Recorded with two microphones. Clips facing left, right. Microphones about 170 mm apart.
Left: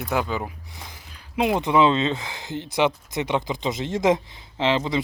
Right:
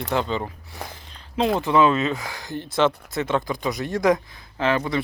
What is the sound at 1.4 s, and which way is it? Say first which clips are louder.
Speech: even; 15° left (ahead or behind).